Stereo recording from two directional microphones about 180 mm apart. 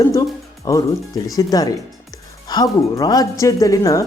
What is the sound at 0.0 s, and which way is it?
Speech, 20° left (ahead or behind).